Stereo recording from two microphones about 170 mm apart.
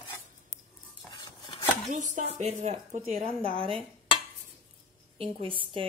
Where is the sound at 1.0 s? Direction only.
30° left (ahead or behind).